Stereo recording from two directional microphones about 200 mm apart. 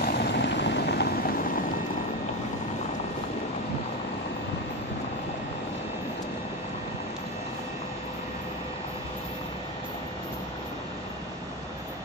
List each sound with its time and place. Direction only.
0.0 s vehicle: 55° left (ahead or behind)